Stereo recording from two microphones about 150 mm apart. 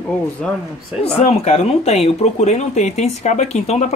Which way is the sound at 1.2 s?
45° left (ahead or behind).